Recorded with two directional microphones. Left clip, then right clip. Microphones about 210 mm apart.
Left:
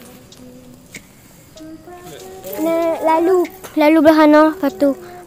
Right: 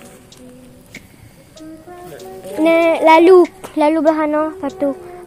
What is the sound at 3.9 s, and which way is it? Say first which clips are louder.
Speech: left 7 dB; 20° left (ahead or behind).